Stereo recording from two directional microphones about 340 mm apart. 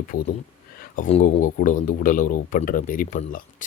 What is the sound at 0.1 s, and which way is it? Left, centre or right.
Speech, left.